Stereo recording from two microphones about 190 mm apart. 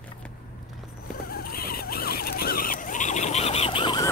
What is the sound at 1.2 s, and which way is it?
Vehicle, 55° left (ahead or behind).